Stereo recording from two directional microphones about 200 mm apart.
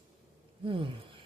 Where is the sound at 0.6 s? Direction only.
25° right (ahead or behind).